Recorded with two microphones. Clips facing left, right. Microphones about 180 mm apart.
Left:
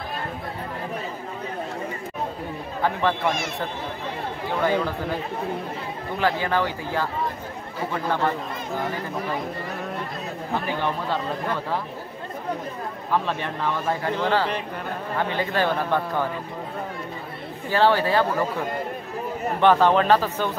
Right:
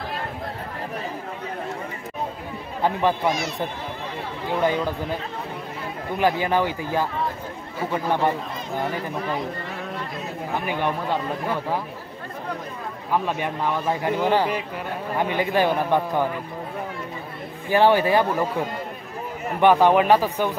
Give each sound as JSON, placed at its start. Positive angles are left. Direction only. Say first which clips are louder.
{"t": 2.8, "sound": "a man's voice", "louder": "right 2 dB", "side_deg": -15}
{"t": 4.5, "sound": "a man's voice", "louder": "right 1 dB", "side_deg": -15}
{"t": 6.1, "sound": "a man's voice", "louder": "right 2 dB", "side_deg": -15}
{"t": 10.6, "sound": "a man's voice", "louder": "right 3 dB", "side_deg": -15}
{"t": 13.1, "sound": "a man's voice", "louder": "right 1 dB", "side_deg": -10}
{"t": 17.6, "sound": "a man's voice", "louder": "right 2 dB", "side_deg": -15}
{"t": 19.6, "sound": "a man's voice", "louder": "right 2 dB", "side_deg": -15}